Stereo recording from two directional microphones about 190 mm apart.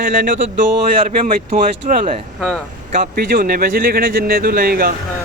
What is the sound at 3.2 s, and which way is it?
Speech, 50° right (ahead or behind).